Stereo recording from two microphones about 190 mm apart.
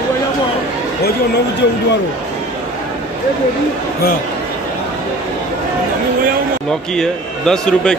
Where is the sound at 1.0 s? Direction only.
60° left (ahead or behind).